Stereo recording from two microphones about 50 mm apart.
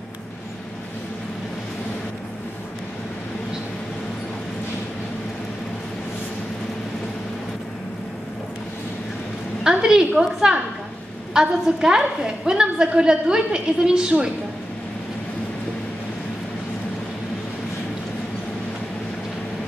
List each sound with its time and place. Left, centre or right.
9.6 s a woman's voice: centre